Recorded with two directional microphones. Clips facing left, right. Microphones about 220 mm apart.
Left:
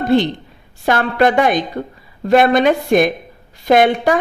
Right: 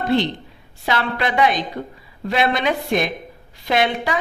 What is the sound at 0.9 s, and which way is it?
A woman's voice, 50° left (ahead or behind).